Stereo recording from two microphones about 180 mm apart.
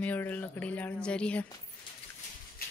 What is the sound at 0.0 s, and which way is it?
Speech, 10° left (ahead or behind).